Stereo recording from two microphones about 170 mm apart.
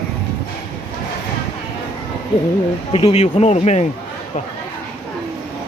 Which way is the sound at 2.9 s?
35° left (ahead or behind).